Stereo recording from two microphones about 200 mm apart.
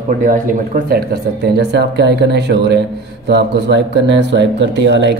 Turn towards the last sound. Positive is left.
turn(degrees=-60)  # may be behind; listen again after turning